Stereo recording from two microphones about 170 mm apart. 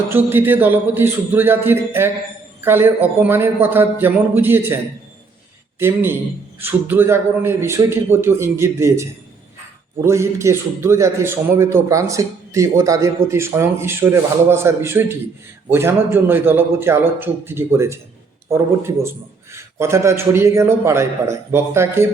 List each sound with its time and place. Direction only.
0.1 s a man's voice: 10° right (ahead or behind)
5.8 s a man's voice: 15° right (ahead or behind)